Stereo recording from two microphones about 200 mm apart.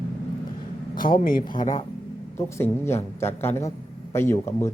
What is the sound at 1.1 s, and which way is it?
Speech, 45° left (ahead or behind).